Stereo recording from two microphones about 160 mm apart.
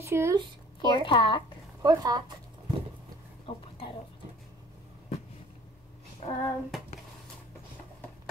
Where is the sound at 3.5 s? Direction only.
35° left (ahead or behind).